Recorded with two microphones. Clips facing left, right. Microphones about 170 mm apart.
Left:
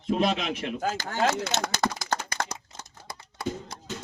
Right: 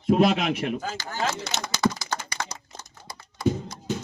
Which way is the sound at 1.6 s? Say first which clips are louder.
Right 3 dB; 55° left (ahead or behind).